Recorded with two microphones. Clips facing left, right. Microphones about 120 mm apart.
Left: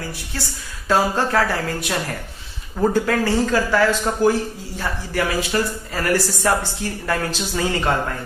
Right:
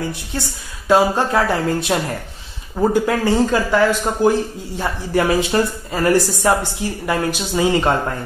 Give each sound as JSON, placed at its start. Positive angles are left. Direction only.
{"t": 0.8, "sound": "speech", "side_deg": -20}